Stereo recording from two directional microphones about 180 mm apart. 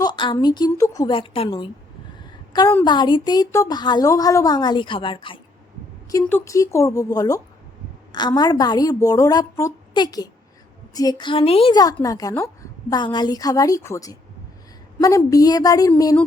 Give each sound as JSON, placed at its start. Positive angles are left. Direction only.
{"t": 0.0, "sound": "a woman's voice", "side_deg": 25}
{"t": 1.1, "sound": "a woman's voice", "side_deg": 30}
{"t": 6.1, "sound": "a woman's voice", "side_deg": 15}